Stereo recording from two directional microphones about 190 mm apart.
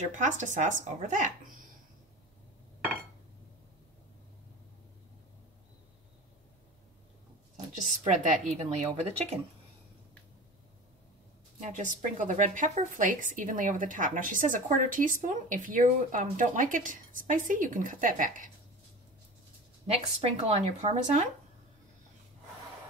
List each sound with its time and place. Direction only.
0.0 s speech: 40° right (ahead or behind)
8.0 s speech: 40° right (ahead or behind)
11.6 s speech: 40° right (ahead or behind)
19.9 s speech: 30° right (ahead or behind)